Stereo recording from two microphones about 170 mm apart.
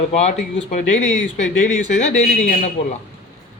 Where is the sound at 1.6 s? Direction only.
45° left (ahead or behind).